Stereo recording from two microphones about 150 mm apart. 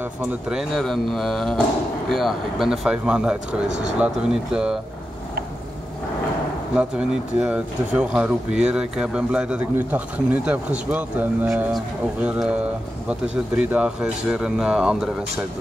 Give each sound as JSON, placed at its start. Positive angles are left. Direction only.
{"t": 0.5, "sound": "speech", "side_deg": 0}
{"t": 6.7, "sound": "speech", "side_deg": -5}